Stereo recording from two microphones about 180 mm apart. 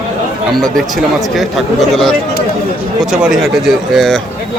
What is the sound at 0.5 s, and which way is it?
Speech, centre (ahead or behind).